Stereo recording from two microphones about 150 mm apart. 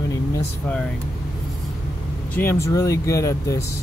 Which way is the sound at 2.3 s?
15° left (ahead or behind).